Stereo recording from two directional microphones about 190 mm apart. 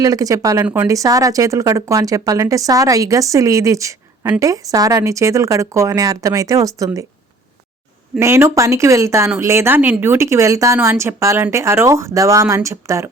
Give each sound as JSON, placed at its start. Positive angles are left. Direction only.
{"t": 0.0, "sound": "speech", "side_deg": -20}
{"t": 8.2, "sound": "speech", "side_deg": -15}